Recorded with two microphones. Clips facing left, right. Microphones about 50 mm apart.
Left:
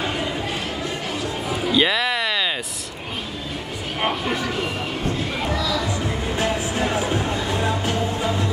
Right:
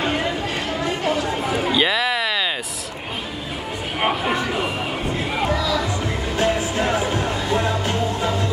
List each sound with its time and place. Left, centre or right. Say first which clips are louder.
1.7 s a sound: left 2 dB; centre
4.0 s music: right 2 dB; centre
6.3 s music: right 4 dB; right